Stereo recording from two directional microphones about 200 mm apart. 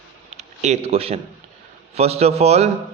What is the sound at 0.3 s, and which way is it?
Speech, 35° right (ahead or behind).